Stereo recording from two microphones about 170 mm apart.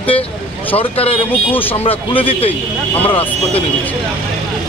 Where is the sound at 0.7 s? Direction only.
35° left (ahead or behind).